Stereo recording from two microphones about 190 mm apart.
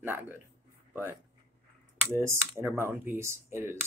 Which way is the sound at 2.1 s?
15° right (ahead or behind).